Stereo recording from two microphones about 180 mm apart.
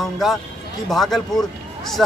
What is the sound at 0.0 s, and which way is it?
A man's voice, centre (ahead or behind).